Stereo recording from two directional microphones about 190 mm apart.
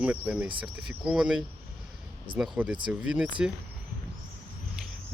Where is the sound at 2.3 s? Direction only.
25° right (ahead or behind).